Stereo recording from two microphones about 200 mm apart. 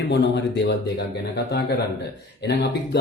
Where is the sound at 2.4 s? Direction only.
55° left (ahead or behind).